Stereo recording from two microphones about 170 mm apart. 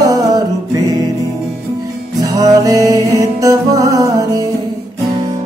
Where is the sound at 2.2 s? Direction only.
20° right (ahead or behind).